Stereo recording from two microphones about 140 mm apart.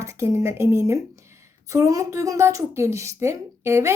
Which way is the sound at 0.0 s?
20° right (ahead or behind).